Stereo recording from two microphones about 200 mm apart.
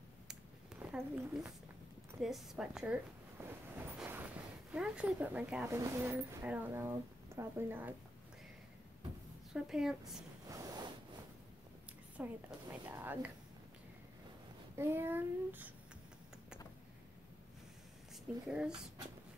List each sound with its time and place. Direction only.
0.9 s a woman's voice: centre (ahead or behind)
2.1 s a sound: centre (ahead or behind)
5.8 s speech: 10° right (ahead or behind)
9.5 s a woman's voice: 5° right (ahead or behind)
10.5 s a sound: 15° right (ahead or behind)
12.2 s speech: 10° right (ahead or behind)
14.8 s speech: 10° right (ahead or behind)
18.5 s a woman's voice: 5° right (ahead or behind)